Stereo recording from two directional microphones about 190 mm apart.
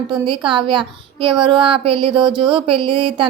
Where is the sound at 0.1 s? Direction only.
25° right (ahead or behind).